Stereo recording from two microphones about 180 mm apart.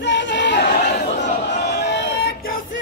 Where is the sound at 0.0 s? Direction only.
80° left.